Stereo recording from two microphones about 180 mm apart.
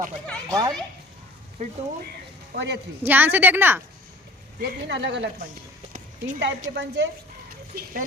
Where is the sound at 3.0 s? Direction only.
10° right (ahead or behind).